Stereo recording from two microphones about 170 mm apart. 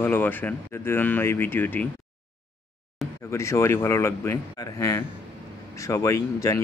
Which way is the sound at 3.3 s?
15° left (ahead or behind).